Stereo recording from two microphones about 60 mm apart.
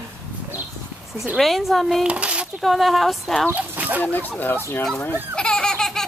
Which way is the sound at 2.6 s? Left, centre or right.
Centre.